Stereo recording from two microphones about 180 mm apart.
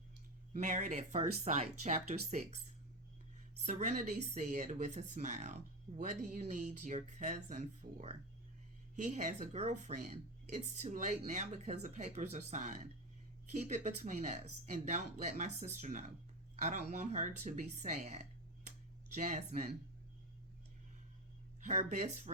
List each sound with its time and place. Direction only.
0.5 s speech: 45° right (ahead or behind)
3.7 s speech: 45° right (ahead or behind)
21.7 s speech: 40° right (ahead or behind)